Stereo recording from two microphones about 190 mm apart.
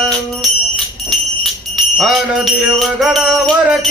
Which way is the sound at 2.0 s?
Centre (ahead or behind).